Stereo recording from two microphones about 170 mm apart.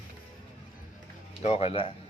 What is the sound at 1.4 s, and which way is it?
Speech, 35° left (ahead or behind).